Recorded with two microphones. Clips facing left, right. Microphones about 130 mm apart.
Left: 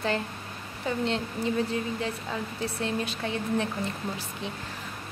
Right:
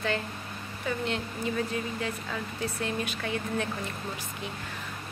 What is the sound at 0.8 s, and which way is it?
Speech, 30° left (ahead or behind).